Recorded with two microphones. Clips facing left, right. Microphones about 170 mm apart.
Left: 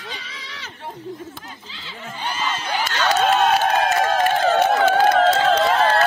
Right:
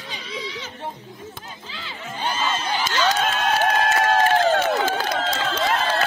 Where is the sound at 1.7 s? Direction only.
55° right (ahead or behind).